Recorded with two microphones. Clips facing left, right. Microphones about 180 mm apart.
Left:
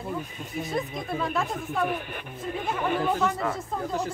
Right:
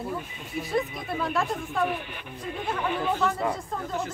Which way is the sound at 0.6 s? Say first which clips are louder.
Right 2 dB; centre (ahead or behind).